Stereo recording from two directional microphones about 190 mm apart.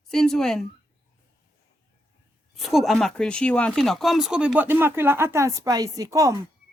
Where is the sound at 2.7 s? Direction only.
Centre (ahead or behind); by 6.4 s 15° right (ahead or behind).